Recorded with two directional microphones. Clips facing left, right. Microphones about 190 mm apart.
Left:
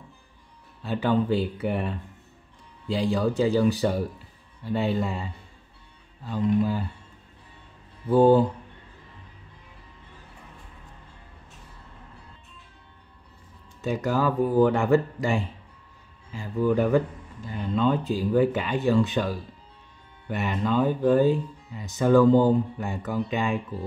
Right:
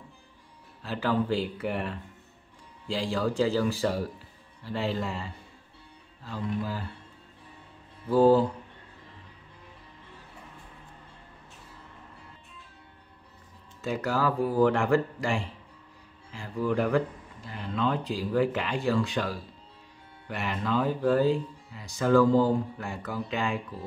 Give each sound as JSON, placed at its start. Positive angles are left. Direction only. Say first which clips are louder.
{"t": 1.6, "sound": "speech", "louder": "left 4 dB", "side_deg": 20}
{"t": 3.0, "sound": "speech", "louder": "left 3 dB", "side_deg": 20}
{"t": 8.1, "sound": "speech", "louder": "left 3 dB", "side_deg": 20}
{"t": 13.7, "sound": "speech", "louder": "left 3 dB", "side_deg": 20}